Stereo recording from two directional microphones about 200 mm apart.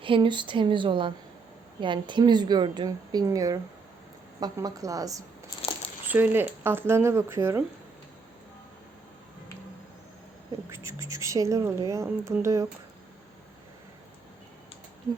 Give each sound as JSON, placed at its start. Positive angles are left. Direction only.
{"t": 0.0, "sound": "a woman's voice", "side_deg": -25}
{"t": 10.7, "sound": "speech", "side_deg": -15}